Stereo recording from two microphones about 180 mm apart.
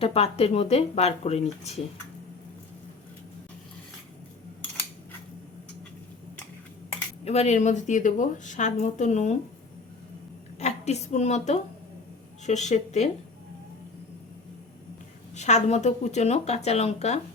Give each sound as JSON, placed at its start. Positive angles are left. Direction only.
{"t": 0.0, "sound": "a woman's voice", "side_deg": 35}
{"t": 7.3, "sound": "a woman's voice", "side_deg": 40}
{"t": 10.6, "sound": "a woman's voice", "side_deg": 35}
{"t": 15.4, "sound": "a woman's voice", "side_deg": 40}